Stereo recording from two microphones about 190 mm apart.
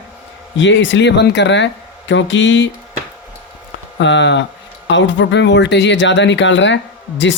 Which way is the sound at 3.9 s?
70° left (ahead or behind).